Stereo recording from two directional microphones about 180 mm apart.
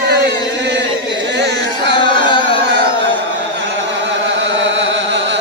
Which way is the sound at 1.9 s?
25° left (ahead or behind).